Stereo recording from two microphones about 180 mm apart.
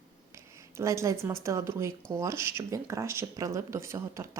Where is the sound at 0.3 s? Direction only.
15° right (ahead or behind).